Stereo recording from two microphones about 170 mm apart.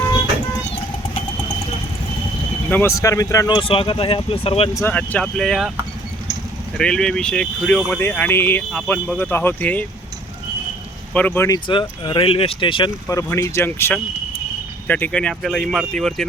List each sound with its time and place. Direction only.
2.6 s speech: 10° left (ahead or behind); by 4.7 s 35° left (ahead or behind)
4.7 s speech: 15° left (ahead or behind)
6.7 s speech: 5° left (ahead or behind)
11.1 s speech: 10° left (ahead or behind)